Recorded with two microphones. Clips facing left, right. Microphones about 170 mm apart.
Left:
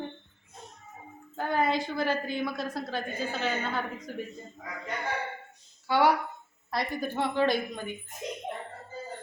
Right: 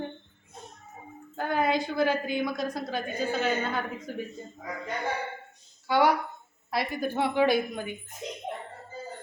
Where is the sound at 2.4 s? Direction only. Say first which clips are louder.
Right 2 dB; 15° right (ahead or behind).